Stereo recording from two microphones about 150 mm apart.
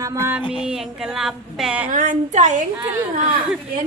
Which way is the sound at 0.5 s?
5° right (ahead or behind).